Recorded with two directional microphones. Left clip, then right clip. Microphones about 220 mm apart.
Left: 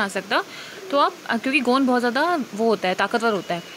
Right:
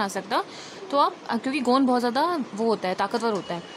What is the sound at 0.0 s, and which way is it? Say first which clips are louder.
Speech: left 3 dB; 5° left (ahead or behind).